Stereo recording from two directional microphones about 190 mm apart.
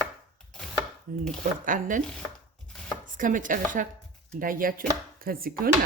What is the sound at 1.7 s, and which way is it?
Speech, 45° right (ahead or behind).